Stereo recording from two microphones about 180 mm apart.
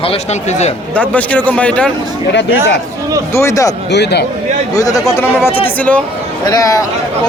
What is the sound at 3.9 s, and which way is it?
Speech, 70° left (ahead or behind).